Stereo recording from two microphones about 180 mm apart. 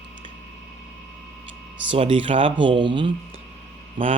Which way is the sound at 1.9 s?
30° right (ahead or behind).